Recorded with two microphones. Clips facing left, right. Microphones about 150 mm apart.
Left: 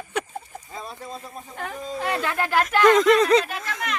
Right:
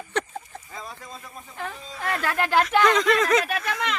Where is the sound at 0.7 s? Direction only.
25° left (ahead or behind).